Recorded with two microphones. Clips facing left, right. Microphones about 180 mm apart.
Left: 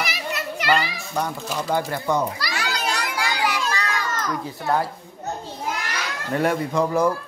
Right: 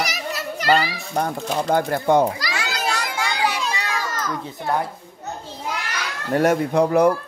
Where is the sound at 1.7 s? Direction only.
55° right (ahead or behind).